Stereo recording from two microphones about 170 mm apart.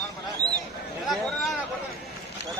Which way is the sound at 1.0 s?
Centre (ahead or behind).